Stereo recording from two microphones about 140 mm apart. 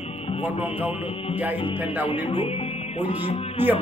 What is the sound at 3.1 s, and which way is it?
Speech, 50° left (ahead or behind).